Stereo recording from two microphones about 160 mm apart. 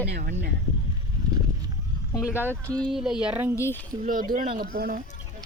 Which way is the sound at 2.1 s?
20° left (ahead or behind).